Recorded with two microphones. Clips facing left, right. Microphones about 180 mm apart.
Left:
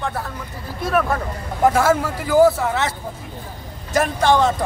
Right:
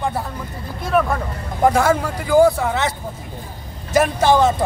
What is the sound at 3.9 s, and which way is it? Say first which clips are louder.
Speech: right 2 dB; 5° right (ahead or behind).